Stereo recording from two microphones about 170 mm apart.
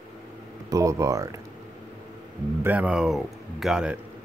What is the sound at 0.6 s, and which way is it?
Speech, 20° right (ahead or behind).